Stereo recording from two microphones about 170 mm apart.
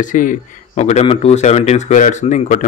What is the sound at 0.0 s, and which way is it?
A man's voice, 50° left (ahead or behind).